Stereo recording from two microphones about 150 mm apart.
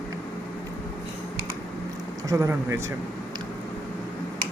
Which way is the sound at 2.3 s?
20° right (ahead or behind).